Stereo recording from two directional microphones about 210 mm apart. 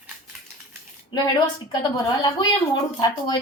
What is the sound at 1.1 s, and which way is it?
A woman's voice, 20° left (ahead or behind).